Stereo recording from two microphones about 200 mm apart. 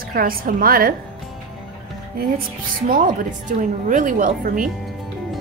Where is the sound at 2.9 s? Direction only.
40° right (ahead or behind).